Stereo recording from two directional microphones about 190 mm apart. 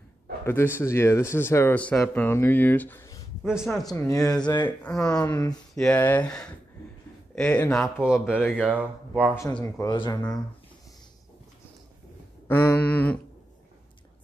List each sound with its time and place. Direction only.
0.5 s speech: 10° left (ahead or behind)
3.4 s speech: centre (ahead or behind)
3.9 s speech: 15° left (ahead or behind); by 9.3 s 5° right (ahead or behind)
9.3 s speech: 10° left (ahead or behind)
9.8 s speech: 25° left (ahead or behind)
12.4 s a sound: 10° left (ahead or behind)